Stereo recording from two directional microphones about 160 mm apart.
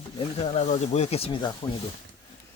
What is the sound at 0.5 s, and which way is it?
Speech, 45° left (ahead or behind).